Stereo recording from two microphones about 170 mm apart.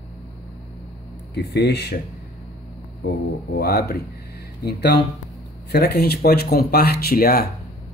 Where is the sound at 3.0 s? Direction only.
70° left (ahead or behind).